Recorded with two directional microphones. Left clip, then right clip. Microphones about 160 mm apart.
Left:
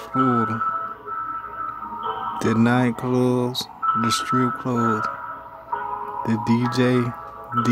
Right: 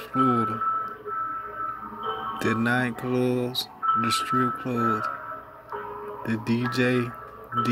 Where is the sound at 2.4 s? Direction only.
15° left (ahead or behind).